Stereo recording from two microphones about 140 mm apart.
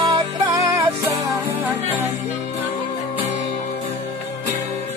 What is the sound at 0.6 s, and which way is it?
Music, 20° right (ahead or behind).